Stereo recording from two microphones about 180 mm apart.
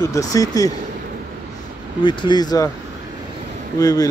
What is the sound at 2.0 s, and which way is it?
Speech, 25° left (ahead or behind).